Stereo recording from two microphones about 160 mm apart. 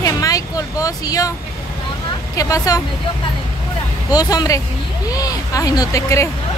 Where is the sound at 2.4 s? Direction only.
20° left (ahead or behind).